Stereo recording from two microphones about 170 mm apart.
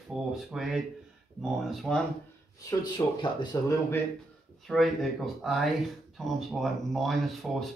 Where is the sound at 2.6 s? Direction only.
20° left (ahead or behind).